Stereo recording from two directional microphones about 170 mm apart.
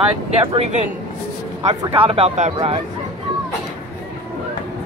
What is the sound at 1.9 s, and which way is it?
Speech, 35° right (ahead or behind).